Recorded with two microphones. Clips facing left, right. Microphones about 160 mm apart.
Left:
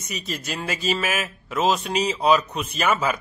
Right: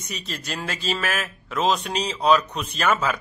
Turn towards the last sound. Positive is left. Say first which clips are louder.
# even
turn(degrees=10)  # may be behind; listen again after turning